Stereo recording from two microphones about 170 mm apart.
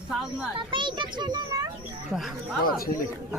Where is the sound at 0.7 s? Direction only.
30° right (ahead or behind).